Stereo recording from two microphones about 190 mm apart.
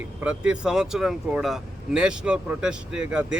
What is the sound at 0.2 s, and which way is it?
Speech, 5° right (ahead or behind).